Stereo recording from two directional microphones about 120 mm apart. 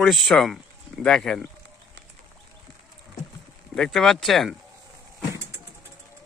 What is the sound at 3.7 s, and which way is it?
Speech, 5° left (ahead or behind).